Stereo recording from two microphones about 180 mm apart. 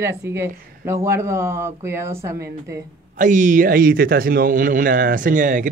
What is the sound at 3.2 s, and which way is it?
Speech, 45° right (ahead or behind).